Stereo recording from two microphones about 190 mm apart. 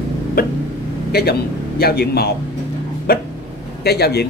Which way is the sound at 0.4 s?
55° left (ahead or behind).